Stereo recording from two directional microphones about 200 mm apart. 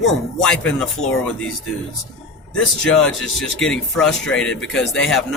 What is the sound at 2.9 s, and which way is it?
Speech, 5° left (ahead or behind).